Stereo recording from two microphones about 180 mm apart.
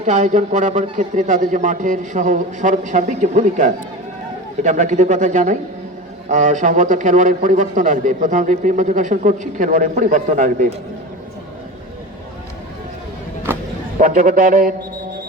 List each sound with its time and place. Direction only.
0.0 s a man's voice: 40° right (ahead or behind)
13.5 s vehicle: 10° right (ahead or behind)
14.0 s a man's voice: 50° right (ahead or behind)